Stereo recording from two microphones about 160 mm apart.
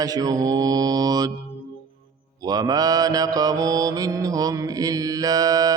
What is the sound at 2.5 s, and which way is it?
Mantra, 25° right (ahead or behind).